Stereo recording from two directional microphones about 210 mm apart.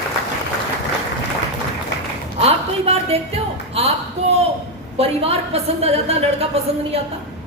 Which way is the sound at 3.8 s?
30° right (ahead or behind).